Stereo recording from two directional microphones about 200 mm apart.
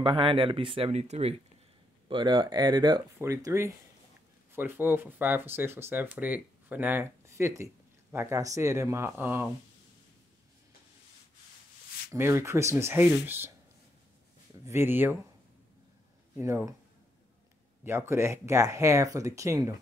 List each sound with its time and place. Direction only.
0.0 s speech: 25° right (ahead or behind)
12.1 s speech: 15° right (ahead or behind)
14.7 s speech: 10° right (ahead or behind)
16.3 s speech: 15° right (ahead or behind)
17.8 s speech: 15° right (ahead or behind)